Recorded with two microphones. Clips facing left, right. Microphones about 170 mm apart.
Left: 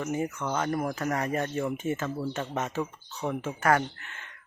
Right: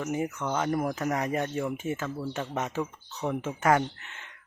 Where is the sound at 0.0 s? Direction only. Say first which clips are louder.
Even; 15° right (ahead or behind).